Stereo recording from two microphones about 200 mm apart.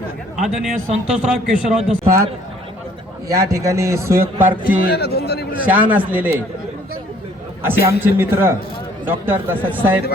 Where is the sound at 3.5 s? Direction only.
15° right (ahead or behind).